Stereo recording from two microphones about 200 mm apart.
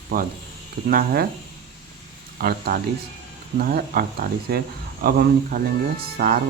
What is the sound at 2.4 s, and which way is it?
Speech, 50° right (ahead or behind).